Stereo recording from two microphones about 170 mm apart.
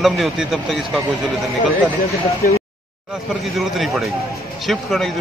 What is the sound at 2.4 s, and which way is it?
Speech, 55° left (ahead or behind).